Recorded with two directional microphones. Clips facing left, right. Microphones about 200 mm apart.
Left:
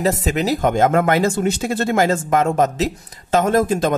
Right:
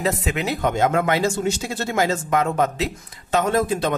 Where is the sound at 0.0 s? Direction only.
40° left (ahead or behind).